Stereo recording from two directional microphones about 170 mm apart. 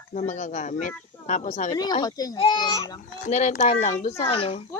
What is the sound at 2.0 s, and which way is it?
Speech, 20° left (ahead or behind).